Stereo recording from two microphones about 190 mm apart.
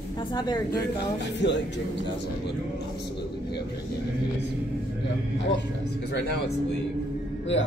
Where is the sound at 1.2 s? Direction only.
65° left (ahead or behind).